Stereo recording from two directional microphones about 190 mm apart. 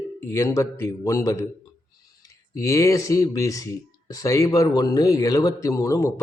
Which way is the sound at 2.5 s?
15° left (ahead or behind).